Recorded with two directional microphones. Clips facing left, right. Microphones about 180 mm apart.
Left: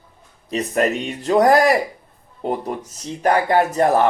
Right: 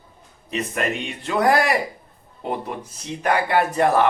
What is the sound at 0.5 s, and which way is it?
Speech, 40° left (ahead or behind).